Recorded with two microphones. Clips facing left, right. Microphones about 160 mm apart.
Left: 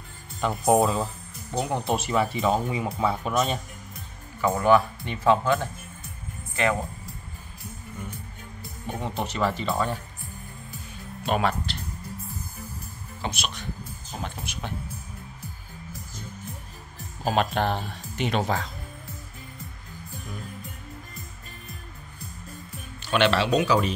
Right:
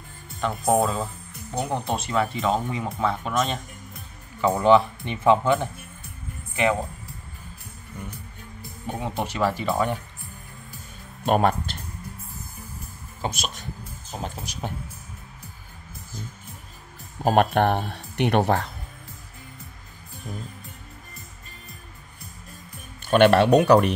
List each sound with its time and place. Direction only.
0.4 s speech: centre (ahead or behind)
4.4 s speech: 20° right (ahead or behind)
9.2 s speech: 10° right (ahead or behind)
11.2 s speech: 50° right (ahead or behind)
13.2 s speech: 45° right (ahead or behind)
17.2 s speech: 55° right (ahead or behind)
23.0 s speech: 50° right (ahead or behind)